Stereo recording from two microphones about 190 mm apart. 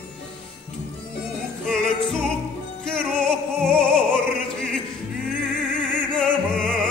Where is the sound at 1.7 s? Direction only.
5° left (ahead or behind).